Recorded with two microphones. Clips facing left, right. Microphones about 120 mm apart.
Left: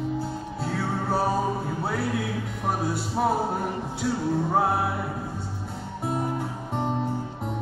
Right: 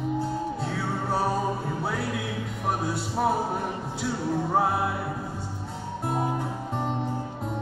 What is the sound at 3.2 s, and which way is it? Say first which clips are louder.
Music: left 1 dB; 5° left (ahead or behind).